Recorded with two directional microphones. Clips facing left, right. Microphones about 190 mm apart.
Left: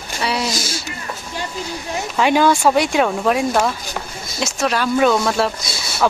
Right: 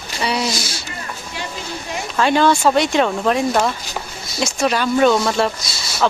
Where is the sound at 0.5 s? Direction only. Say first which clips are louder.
Left 2 dB; 45° left (ahead or behind).